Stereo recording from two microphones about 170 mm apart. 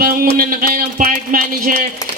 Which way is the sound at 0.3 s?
55° right (ahead or behind).